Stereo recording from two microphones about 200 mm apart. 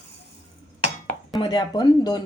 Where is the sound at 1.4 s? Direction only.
20° left (ahead or behind).